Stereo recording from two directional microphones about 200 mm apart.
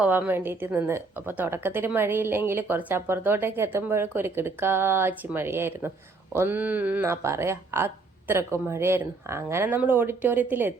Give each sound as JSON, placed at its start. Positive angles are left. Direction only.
{"t": 0.0, "sound": "a woman's voice", "side_deg": -10}